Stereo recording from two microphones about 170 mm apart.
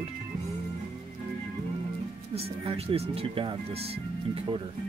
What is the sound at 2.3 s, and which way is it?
Speech, 35° right (ahead or behind).